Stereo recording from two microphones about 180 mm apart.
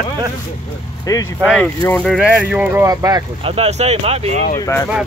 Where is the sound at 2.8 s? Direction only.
20° right (ahead or behind).